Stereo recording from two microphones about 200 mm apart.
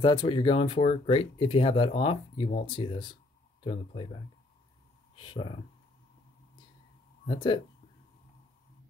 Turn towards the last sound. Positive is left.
turn(degrees=25)  # may be behind; listen again after turning